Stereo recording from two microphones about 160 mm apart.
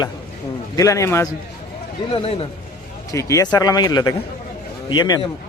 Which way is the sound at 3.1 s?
20° left (ahead or behind).